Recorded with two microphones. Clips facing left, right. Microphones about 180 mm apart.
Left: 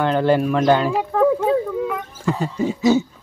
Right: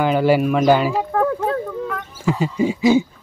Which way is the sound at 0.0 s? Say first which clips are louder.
Right 1 dB; 5° right (ahead or behind).